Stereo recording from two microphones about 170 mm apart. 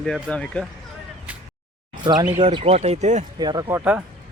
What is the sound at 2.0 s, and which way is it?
Speech, 25° right (ahead or behind).